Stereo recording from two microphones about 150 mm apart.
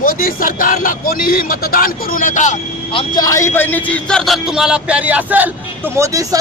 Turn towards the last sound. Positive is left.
turn(degrees=-20)  # may be behind; listen again after turning